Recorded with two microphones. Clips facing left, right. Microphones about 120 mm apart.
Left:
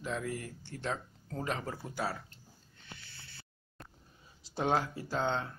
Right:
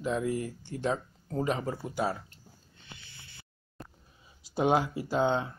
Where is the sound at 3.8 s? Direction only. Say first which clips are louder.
Right 6 dB; centre (ahead or behind).